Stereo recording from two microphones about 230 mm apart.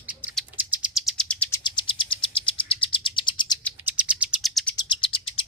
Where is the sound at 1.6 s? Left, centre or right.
Left.